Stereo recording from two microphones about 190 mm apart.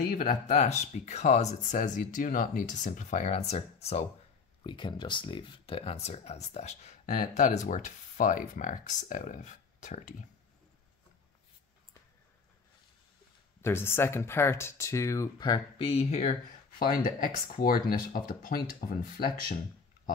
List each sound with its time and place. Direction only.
0.1 s speech: 50° left (ahead or behind)
13.6 s speech: 10° left (ahead or behind); by 19.6 s 50° left (ahead or behind)